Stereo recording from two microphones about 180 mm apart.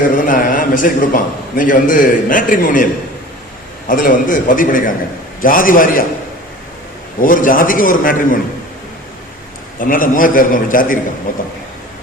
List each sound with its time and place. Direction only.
0.2 s a man's voice: 50° left (ahead or behind)
3.8 s a man's voice: 50° left (ahead or behind)
7.2 s a man's voice: 50° left (ahead or behind)
9.7 s a man's voice: 50° left (ahead or behind)